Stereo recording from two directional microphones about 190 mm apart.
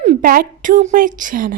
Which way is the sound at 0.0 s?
45° right (ahead or behind).